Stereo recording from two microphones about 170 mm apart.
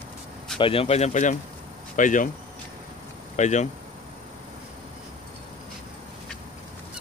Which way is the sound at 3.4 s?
45° left (ahead or behind).